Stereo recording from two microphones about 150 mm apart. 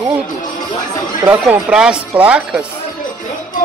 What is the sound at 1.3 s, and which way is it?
Speech, 10° right (ahead or behind).